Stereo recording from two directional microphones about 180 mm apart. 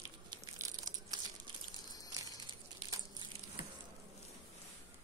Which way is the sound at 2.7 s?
20° right (ahead or behind).